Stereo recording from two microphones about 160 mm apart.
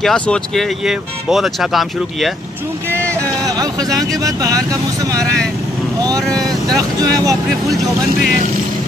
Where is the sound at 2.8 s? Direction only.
15° right (ahead or behind).